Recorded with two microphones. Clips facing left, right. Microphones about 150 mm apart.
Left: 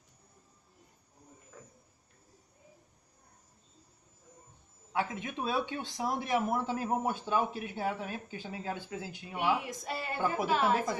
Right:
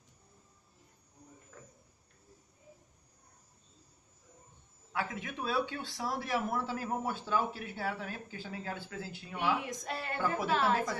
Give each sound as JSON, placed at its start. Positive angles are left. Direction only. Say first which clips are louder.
{"t": 4.9, "sound": "speech", "louder": "left 3 dB", "side_deg": 20}
{"t": 9.4, "sound": "a woman's voice", "louder": "left 2 dB", "side_deg": 5}